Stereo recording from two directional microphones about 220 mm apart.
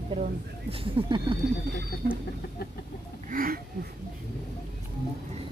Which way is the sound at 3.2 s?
40° right (ahead or behind).